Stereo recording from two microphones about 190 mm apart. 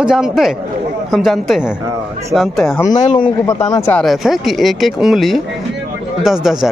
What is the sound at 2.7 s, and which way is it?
Speech, 15° left (ahead or behind).